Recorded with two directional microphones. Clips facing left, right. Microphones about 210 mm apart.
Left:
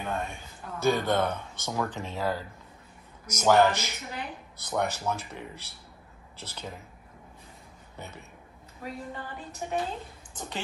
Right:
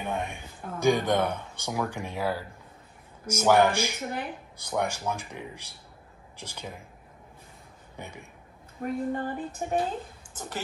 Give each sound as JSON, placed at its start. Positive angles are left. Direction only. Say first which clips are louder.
{"t": 0.0, "sound": "speech", "louder": "right 1 dB", "side_deg": -15}
{"t": 8.0, "sound": "speech", "louder": "right 1 dB", "side_deg": -10}
{"t": 8.8, "sound": "a sound", "louder": "right 9 dB", "side_deg": -50}